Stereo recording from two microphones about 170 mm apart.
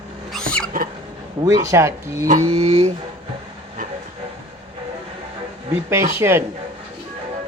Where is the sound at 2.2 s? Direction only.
50° right (ahead or behind).